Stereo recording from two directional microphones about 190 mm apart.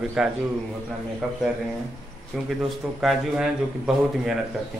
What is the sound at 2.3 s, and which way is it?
A man's voice, centre (ahead or behind).